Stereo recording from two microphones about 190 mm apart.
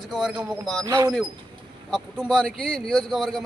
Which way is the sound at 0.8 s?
15° right (ahead or behind).